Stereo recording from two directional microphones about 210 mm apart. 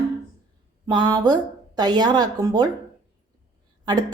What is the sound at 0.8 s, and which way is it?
A woman's voice, 20° right (ahead or behind).